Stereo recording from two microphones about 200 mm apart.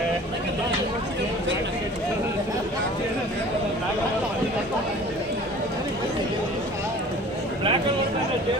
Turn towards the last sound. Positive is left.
turn(degrees=-30)  # may be behind; listen again after turning